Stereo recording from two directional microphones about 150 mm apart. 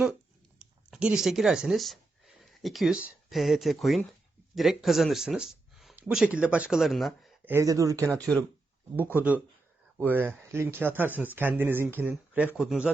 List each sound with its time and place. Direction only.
0.6 s speech: 5° right (ahead or behind)
7.4 s speech: 20° right (ahead or behind)
9.1 s speech: 10° right (ahead or behind)